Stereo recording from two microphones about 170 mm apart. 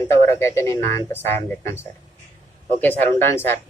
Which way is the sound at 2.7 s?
10° left (ahead or behind).